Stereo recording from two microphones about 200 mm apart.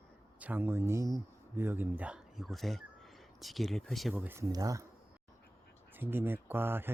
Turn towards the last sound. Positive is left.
turn(degrees=-10)  # may be behind; listen again after turning